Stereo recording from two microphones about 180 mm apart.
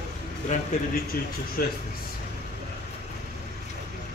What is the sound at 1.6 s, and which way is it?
Speech, 55° left (ahead or behind).